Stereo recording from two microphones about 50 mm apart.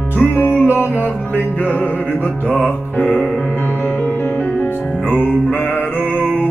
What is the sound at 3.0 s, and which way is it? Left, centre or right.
Music, left.